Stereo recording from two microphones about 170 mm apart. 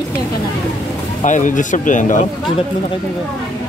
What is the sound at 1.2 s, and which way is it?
Speech, 50° left (ahead or behind).